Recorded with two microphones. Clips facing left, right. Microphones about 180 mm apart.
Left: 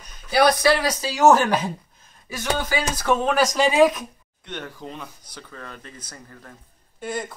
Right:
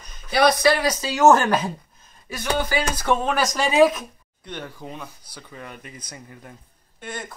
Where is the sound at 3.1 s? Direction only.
5° left (ahead or behind); by 6.5 s 15° right (ahead or behind).